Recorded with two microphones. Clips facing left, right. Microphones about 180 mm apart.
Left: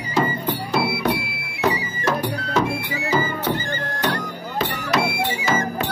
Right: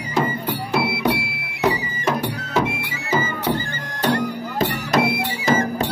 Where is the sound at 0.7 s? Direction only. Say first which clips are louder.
Right 1 dB; centre (ahead or behind).